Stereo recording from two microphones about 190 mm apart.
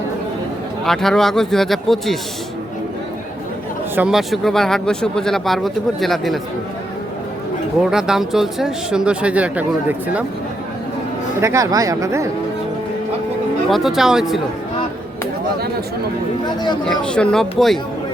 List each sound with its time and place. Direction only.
0.9 s speech: centre (ahead or behind)
3.9 s speech: 5° right (ahead or behind)
7.9 s speech: 5° right (ahead or behind)
11.3 s speech: 15° right (ahead or behind)
13.7 s speech: centre (ahead or behind)
16.8 s speech: 5° left (ahead or behind)